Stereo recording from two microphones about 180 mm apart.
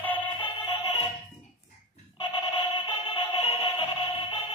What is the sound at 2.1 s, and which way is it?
Music, 30° left (ahead or behind).